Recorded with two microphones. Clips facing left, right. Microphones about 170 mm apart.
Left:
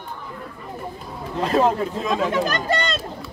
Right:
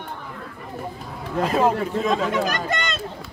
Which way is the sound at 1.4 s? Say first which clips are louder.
Left 1 dB; 5° right (ahead or behind).